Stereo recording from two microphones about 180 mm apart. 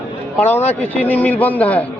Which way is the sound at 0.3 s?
10° left (ahead or behind).